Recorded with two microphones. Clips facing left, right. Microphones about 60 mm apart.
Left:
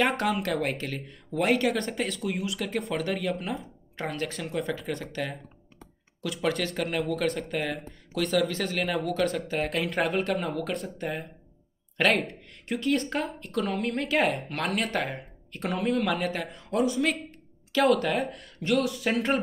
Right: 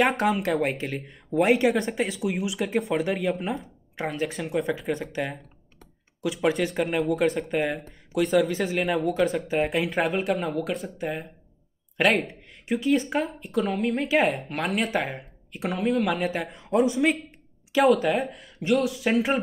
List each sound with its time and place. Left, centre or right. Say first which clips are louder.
0.0 s speech: right 3 dB; centre
16.9 s speech: right 4 dB; centre